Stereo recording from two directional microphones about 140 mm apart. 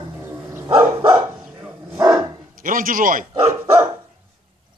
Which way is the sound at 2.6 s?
80° right.